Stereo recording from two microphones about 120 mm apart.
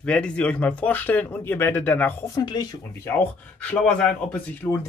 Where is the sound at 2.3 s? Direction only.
35° left (ahead or behind).